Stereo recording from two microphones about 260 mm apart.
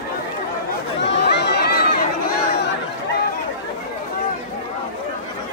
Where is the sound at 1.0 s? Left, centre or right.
Left.